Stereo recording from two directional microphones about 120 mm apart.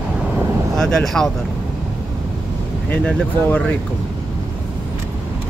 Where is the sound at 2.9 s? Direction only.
10° left (ahead or behind).